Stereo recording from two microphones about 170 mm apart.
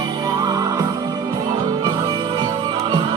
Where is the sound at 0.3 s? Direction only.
25° right (ahead or behind).